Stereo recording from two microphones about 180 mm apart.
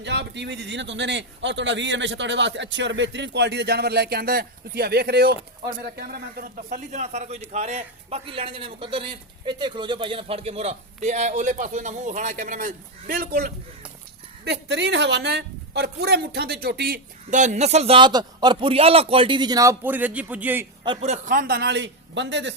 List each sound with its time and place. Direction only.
0.0 s a man's voice: 75° right (ahead or behind); by 13.5 s 60° right (ahead or behind)
14.4 s a man's voice: 70° right (ahead or behind); by 20.7 s 10° right (ahead or behind)
20.8 s a man's voice: 30° right (ahead or behind); by 22.5 s 80° right